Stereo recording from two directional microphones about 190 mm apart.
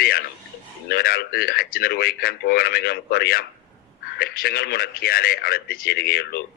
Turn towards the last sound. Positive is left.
turn(degrees=55)  # may be behind; listen again after turning